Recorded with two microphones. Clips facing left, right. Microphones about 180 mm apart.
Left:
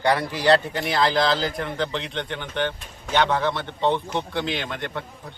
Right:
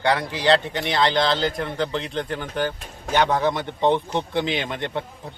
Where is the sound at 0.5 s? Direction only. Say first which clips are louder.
Even; centre (ahead or behind).